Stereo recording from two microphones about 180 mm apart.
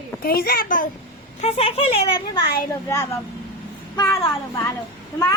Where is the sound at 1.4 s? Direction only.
35° left (ahead or behind).